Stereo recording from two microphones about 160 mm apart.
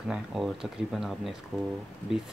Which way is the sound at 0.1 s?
Centre (ahead or behind).